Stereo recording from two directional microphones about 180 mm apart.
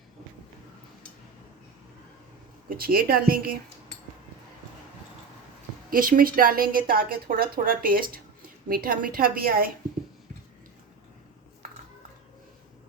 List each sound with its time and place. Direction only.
2.6 s a woman's voice: 55° right (ahead or behind)
5.9 s a woman's voice: 50° right (ahead or behind)